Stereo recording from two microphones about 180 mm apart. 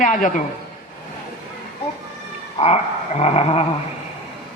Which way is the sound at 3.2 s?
35° left (ahead or behind).